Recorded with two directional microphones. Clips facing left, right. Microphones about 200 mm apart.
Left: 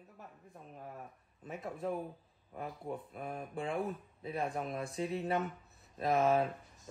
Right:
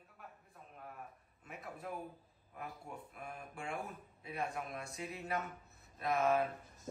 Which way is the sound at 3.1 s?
30° left (ahead or behind).